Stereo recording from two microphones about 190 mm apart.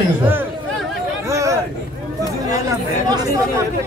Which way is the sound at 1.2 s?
15° right (ahead or behind).